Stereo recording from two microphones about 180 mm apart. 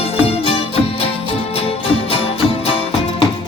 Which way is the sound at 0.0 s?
30° left (ahead or behind).